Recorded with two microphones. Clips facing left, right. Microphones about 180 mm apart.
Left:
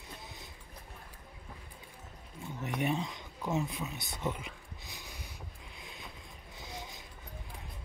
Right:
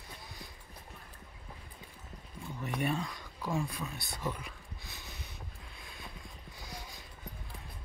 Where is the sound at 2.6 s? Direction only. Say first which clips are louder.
Left 1 dB; 20° left (ahead or behind).